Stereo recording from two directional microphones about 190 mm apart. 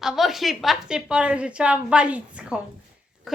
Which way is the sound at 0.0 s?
Centre (ahead or behind).